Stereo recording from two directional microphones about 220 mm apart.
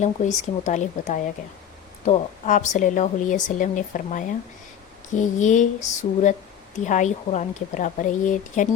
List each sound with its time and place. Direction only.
0.0 s a woman's voice: 35° left (ahead or behind)